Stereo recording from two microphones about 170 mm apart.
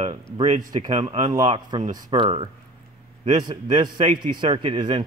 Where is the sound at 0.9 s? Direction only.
40° right (ahead or behind).